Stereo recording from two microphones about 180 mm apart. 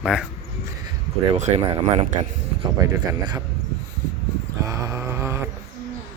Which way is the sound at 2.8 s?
20° right (ahead or behind).